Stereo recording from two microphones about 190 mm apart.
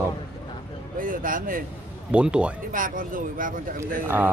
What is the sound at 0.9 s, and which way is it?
Speech, 45° right (ahead or behind).